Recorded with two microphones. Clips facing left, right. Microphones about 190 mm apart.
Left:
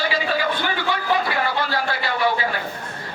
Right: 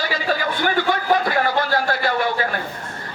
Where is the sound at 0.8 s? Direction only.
45° right (ahead or behind).